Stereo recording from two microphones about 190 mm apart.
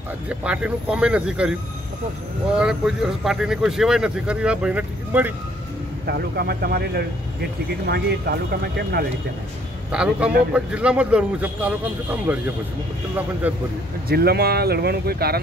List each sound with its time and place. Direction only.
0.3 s speech: 5° right (ahead or behind)
2.6 s speech: 5° right (ahead or behind)
6.0 s speech: 55° right (ahead or behind)
9.8 s speech: 5° right (ahead or behind)
14.0 s speech: 55° right (ahead or behind)